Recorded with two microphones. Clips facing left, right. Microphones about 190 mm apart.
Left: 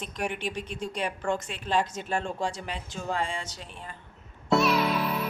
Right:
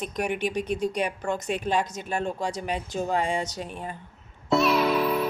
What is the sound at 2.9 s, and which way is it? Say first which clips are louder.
Speech: right 5 dB; 40° right (ahead or behind).